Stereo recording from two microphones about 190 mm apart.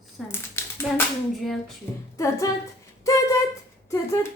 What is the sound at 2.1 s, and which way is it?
Speech, 15° left (ahead or behind).